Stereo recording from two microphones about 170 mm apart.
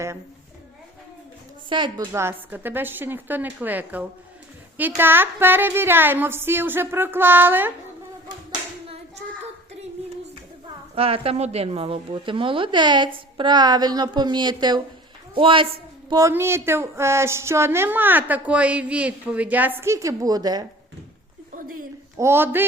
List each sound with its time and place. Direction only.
1.7 s a woman's voice: 30° right (ahead or behind)
2.1 s speech: 15° right (ahead or behind)
10.9 s a woman's voice: 35° right (ahead or behind)
21.5 s a sound: 55° right (ahead or behind)
22.2 s speech: 15° right (ahead or behind)